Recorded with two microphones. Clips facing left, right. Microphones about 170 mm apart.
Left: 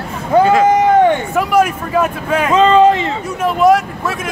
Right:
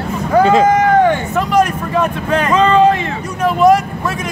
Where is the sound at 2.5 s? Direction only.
20° left (ahead or behind).